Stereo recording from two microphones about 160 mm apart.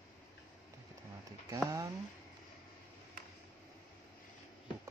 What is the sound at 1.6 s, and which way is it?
Speech, 20° right (ahead or behind).